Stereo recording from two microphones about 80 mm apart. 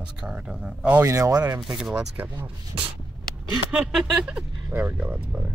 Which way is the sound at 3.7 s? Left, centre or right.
Centre.